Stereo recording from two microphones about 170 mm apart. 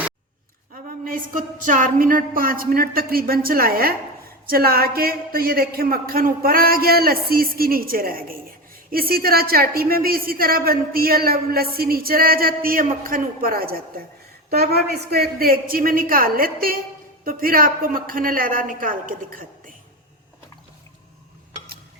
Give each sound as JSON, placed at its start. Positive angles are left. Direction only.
{"t": 0.7, "sound": "a man's voice", "side_deg": -55}